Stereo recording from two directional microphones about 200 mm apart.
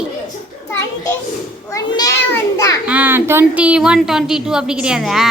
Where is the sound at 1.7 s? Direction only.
15° left (ahead or behind).